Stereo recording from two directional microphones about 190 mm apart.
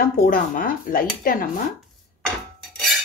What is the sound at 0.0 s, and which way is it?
Speech, 50° left (ahead or behind).